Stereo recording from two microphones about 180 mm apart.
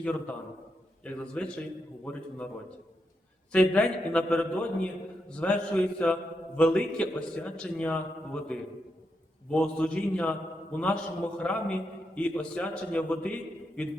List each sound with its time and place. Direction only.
0.0 s a man's voice: 5° left (ahead or behind)
3.5 s a man's voice: 5° left (ahead or behind)